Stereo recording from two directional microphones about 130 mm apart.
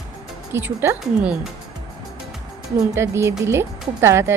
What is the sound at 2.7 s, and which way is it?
Speech, 20° right (ahead or behind).